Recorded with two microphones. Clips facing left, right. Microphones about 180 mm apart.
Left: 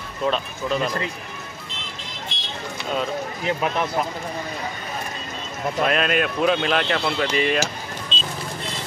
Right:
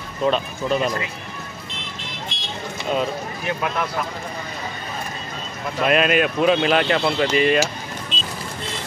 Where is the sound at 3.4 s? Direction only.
20° left (ahead or behind).